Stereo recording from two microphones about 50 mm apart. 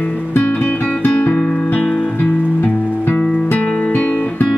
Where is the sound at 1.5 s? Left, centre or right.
Left.